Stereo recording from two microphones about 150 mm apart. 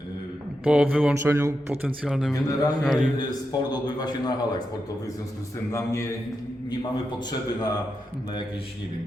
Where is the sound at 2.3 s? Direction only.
25° left (ahead or behind).